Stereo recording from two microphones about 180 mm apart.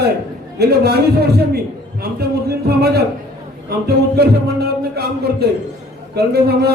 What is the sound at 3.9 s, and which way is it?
Music, 65° right (ahead or behind).